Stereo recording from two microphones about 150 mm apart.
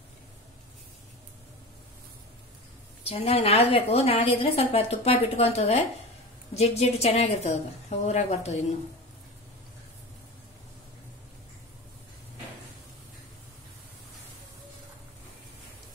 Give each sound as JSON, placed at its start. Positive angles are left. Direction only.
{"t": 3.0, "sound": "a woman's voice", "side_deg": 40}